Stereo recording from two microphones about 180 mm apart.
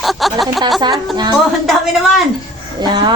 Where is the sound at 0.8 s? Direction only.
25° right (ahead or behind).